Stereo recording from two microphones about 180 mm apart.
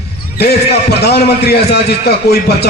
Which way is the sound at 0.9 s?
65° left (ahead or behind).